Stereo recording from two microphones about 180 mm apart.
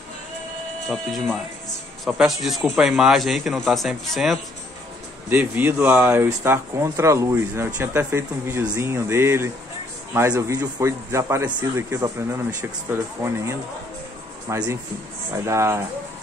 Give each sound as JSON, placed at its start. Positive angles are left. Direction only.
{"t": 0.8, "sound": "speech", "side_deg": 0}
{"t": 5.3, "sound": "speech", "side_deg": -10}